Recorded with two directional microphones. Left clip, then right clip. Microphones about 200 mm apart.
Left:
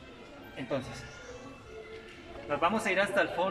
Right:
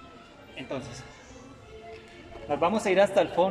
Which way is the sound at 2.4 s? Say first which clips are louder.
Right 3 dB; 25° right (ahead or behind).